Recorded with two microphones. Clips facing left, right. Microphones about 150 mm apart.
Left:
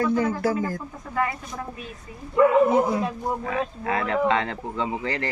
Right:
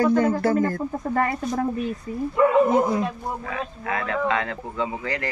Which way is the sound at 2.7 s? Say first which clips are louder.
Right 1 dB; 10° left (ahead or behind).